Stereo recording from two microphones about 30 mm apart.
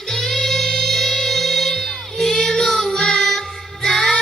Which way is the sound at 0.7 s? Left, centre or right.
Left.